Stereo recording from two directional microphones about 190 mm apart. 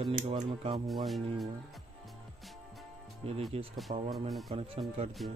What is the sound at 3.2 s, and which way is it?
Speech, 30° right (ahead or behind).